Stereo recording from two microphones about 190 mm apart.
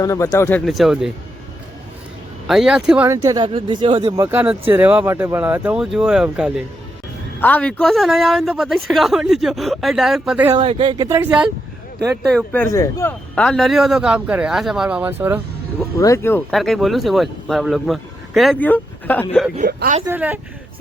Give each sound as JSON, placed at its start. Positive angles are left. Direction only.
{"t": 0.0, "sound": "speech", "side_deg": 20}
{"t": 0.6, "sound": "speech", "side_deg": 0}
{"t": 2.5, "sound": "speech", "side_deg": -5}
{"t": 3.1, "sound": "speech", "side_deg": -20}
{"t": 7.4, "sound": "speech", "side_deg": 5}
{"t": 10.5, "sound": "speech", "side_deg": -25}
{"t": 11.2, "sound": "speech", "side_deg": -5}
{"t": 12.5, "sound": "speech", "side_deg": 15}
{"t": 16.0, "sound": "speech", "side_deg": 15}
{"t": 16.5, "sound": "speech", "side_deg": 0}
{"t": 19.5, "sound": "speech", "side_deg": -45}
{"t": 20.1, "sound": "speech", "side_deg": -10}